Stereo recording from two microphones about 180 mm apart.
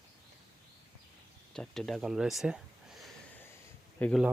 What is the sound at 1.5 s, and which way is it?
Speech, 5° left (ahead or behind).